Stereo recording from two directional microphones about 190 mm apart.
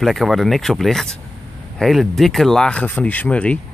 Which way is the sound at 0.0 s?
Centre (ahead or behind).